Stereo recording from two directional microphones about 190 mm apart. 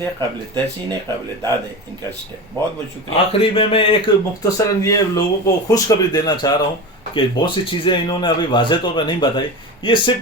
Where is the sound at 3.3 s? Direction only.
30° left (ahead or behind).